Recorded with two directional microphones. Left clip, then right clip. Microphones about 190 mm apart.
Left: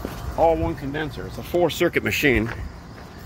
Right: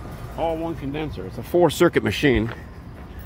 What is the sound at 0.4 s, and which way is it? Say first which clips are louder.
Speech: left 6 dB; 15° left (ahead or behind).